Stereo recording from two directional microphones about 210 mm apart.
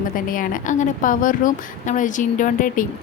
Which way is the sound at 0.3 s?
40° left (ahead or behind).